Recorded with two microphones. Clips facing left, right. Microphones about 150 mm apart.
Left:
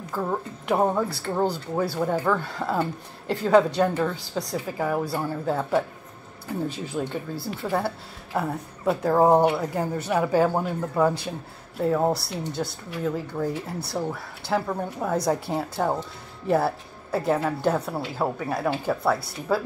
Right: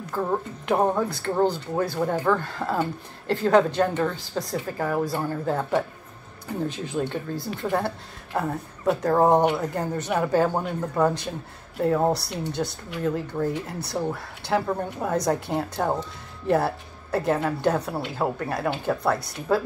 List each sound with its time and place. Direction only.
1.0 s a woman's voice: 5° left (ahead or behind)